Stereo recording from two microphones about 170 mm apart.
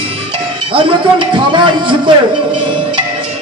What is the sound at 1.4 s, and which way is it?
Speech, 30° right (ahead or behind).